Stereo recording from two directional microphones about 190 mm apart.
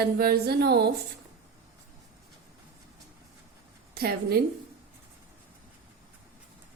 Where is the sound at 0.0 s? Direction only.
55° right (ahead or behind).